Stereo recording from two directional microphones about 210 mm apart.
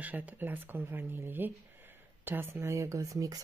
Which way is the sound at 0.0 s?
5° right (ahead or behind).